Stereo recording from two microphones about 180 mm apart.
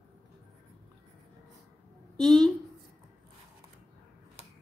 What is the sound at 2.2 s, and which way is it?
Speech, centre (ahead or behind).